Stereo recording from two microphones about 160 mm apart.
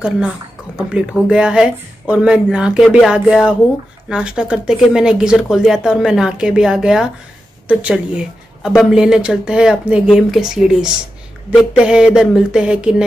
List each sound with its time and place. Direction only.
0.7 s speech: 5° right (ahead or behind)